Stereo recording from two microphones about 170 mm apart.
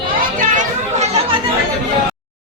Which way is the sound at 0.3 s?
45° right (ahead or behind).